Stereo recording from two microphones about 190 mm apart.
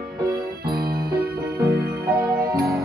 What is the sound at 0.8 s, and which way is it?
Music, 55° right (ahead or behind).